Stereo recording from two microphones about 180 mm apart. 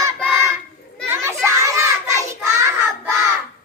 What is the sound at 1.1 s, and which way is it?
Children playing, 15° right (ahead or behind).